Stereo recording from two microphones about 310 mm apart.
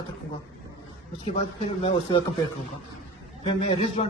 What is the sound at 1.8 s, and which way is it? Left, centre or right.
Speech, centre.